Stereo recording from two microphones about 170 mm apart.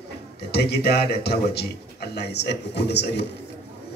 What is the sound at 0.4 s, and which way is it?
A man's voice, 75° left (ahead or behind).